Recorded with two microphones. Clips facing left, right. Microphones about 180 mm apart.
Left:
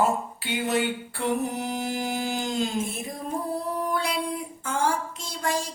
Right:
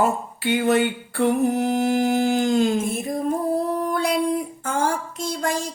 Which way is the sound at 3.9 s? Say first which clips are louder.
Right 5 dB; 45° right (ahead or behind).